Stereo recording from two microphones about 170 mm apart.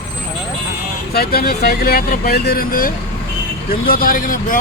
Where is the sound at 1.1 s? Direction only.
65° left (ahead or behind).